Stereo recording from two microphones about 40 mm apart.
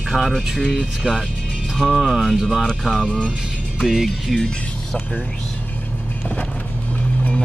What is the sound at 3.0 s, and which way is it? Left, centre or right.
Speech, left.